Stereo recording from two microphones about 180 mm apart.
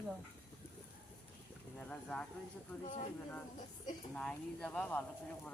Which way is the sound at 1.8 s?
5° left (ahead or behind).